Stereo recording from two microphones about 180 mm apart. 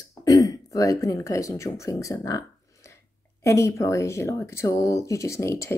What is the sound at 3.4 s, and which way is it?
Speech, 15° left (ahead or behind).